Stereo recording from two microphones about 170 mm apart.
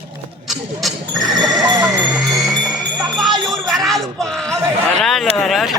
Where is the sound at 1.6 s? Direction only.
20° right (ahead or behind).